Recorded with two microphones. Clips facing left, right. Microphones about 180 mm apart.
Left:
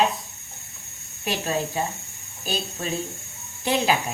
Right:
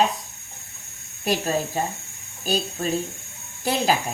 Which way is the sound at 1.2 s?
40° right (ahead or behind).